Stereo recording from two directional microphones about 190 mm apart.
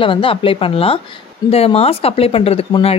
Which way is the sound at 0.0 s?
30° left (ahead or behind).